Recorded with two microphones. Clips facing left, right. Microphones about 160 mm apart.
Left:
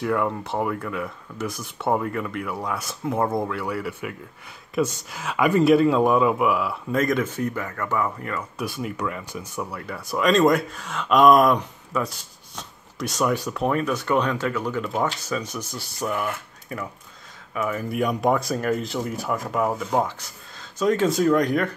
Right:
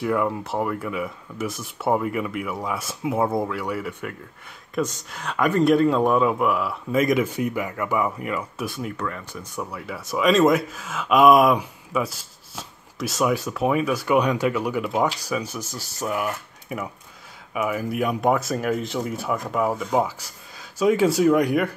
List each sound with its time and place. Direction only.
0.0 s speech: centre (ahead or behind)
8.6 s speech: centre (ahead or behind)
8.9 s speech: 10° left (ahead or behind); by 21.6 s 10° right (ahead or behind)